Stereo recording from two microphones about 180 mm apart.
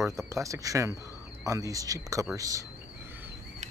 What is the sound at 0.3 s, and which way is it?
Speech, 15° right (ahead or behind).